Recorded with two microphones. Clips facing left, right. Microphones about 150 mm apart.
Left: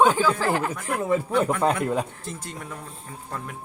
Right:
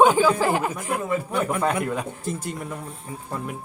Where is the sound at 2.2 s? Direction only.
10° right (ahead or behind).